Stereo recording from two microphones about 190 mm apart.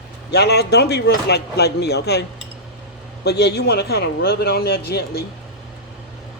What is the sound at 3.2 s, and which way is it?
Speech, 60° left (ahead or behind).